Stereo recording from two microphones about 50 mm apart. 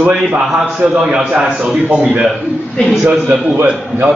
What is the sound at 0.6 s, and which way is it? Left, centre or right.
A man's voice, right.